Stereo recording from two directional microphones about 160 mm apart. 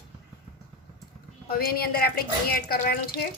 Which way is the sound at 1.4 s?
70° left (ahead or behind).